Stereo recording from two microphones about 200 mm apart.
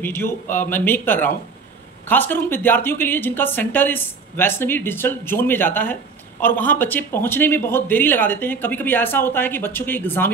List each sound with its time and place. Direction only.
0.0 s a woman's voice: 10° left (ahead or behind)